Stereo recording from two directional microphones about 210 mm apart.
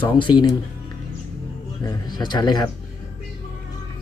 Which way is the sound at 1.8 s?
20° left (ahead or behind).